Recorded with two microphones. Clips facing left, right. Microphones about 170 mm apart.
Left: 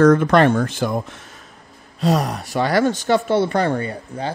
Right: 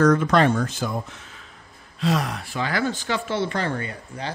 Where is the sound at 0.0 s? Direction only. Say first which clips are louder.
Left 5 dB; 55° left (ahead or behind).